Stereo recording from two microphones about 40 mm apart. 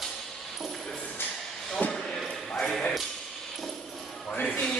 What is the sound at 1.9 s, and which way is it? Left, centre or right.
Basketball bounce, centre.